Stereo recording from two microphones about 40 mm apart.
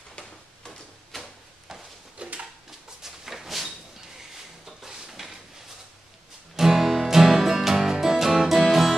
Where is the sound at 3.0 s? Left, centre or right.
Centre.